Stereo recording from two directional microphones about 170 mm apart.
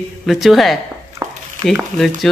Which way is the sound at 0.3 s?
Centre (ahead or behind).